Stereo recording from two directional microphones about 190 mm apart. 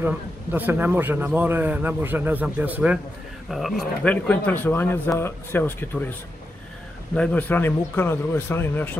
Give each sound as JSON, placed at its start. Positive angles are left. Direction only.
{"t": 0.0, "sound": "a man's voice", "side_deg": -10}
{"t": 7.2, "sound": "a man's voice", "side_deg": 5}